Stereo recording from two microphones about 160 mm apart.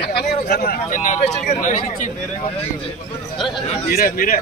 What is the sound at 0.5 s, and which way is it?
A man's voice, 70° left (ahead or behind).